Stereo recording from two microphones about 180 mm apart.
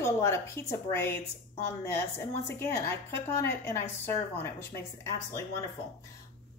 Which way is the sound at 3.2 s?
15° left (ahead or behind).